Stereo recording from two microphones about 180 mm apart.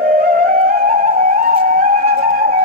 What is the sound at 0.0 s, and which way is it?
Music, 50° right (ahead or behind).